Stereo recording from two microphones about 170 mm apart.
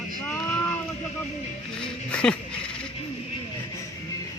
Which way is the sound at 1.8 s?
5° left (ahead or behind).